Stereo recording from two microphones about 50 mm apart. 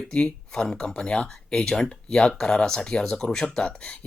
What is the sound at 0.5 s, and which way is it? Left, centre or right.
Speech, centre.